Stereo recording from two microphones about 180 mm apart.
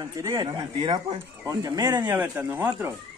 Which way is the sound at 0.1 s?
20° right (ahead or behind).